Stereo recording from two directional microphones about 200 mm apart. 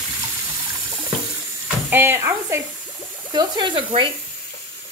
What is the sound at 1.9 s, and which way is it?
Speech, 10° right (ahead or behind).